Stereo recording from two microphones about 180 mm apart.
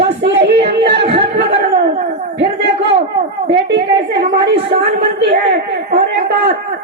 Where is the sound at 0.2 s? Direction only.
70° right (ahead or behind).